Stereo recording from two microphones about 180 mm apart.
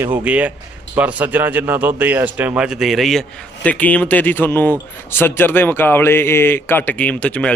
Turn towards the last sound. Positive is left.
turn(degrees=5)  # may be behind; listen again after turning